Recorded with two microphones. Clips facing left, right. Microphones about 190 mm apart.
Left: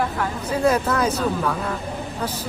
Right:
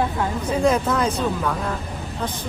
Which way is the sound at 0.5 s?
10° left (ahead or behind).